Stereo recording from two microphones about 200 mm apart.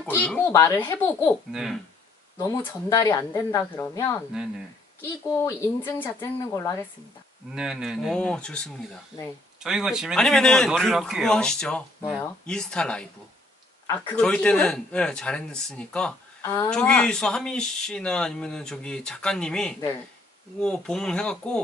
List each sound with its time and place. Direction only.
0.0 s speech: 5° left (ahead or behind)
1.5 s a man's voice: centre (ahead or behind)
2.3 s speech: 15° left (ahead or behind)
5.4 s speech: 15° left (ahead or behind)
7.5 s a man's voice: 5° right (ahead or behind)